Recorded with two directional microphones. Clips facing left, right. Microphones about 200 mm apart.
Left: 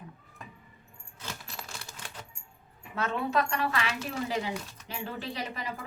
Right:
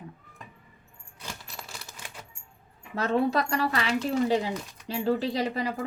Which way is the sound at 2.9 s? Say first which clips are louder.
Right 4 dB; 35° right (ahead or behind).